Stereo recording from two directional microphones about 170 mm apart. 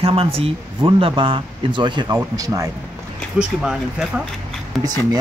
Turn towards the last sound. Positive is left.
turn(degrees=0)  # may be behind; listen again after turning